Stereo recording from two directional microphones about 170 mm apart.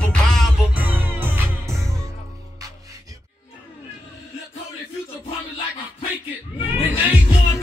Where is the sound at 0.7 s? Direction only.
10° right (ahead or behind).